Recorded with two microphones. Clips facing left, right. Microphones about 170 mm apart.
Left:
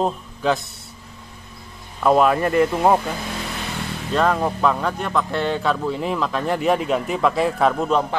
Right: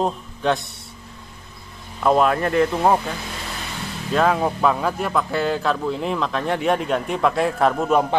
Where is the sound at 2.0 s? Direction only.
Centre (ahead or behind).